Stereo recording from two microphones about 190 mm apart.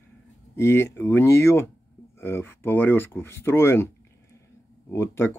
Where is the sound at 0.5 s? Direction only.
15° left (ahead or behind).